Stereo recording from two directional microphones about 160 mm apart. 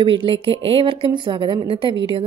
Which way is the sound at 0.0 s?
35° right (ahead or behind).